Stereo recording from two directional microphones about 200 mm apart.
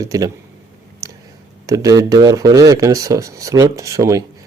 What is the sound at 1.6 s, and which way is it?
Speech, 15° right (ahead or behind).